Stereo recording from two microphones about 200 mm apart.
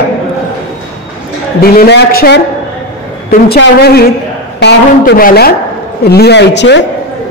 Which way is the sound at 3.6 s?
55° left (ahead or behind).